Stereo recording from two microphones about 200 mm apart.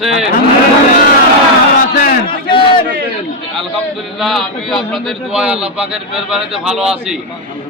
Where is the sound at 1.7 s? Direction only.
50° left (ahead or behind).